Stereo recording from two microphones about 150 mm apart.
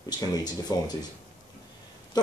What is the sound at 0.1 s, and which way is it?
Speech, 25° left (ahead or behind).